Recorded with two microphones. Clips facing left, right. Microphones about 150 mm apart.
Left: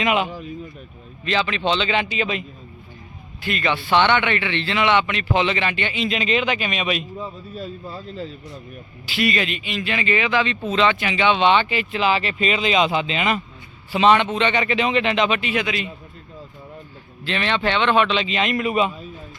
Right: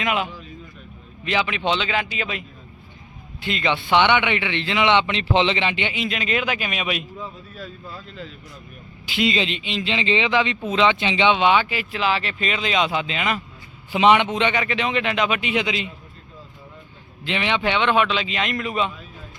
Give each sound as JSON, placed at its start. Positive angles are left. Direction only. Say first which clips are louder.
{"t": 0.0, "sound": "speech", "louder": "left 3 dB", "side_deg": 0}
{"t": 1.2, "sound": "a man's voice", "louder": "left 1 dB", "side_deg": -15}
{"t": 3.4, "sound": "a man's voice", "louder": "even", "side_deg": -20}
{"t": 6.1, "sound": "speech", "louder": "left 5 dB", "side_deg": 0}
{"t": 7.2, "sound": "a man's voice", "louder": "left 4 dB", "side_deg": 30}
{"t": 9.0, "sound": "a man's voice", "louder": "even", "side_deg": -20}
{"t": 11.3, "sound": "speech", "louder": "left 1 dB", "side_deg": -10}
{"t": 13.9, "sound": "a man's voice", "louder": "even", "side_deg": -15}
{"t": 14.5, "sound": "speech", "louder": "left 3 dB", "side_deg": 0}
{"t": 15.4, "sound": "a man's voice", "louder": "even", "side_deg": -20}
{"t": 17.2, "sound": "a man's voice", "louder": "left 1 dB", "side_deg": -15}